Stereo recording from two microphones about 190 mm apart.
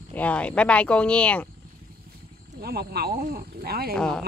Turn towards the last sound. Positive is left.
turn(degrees=5)  # may be behind; listen again after turning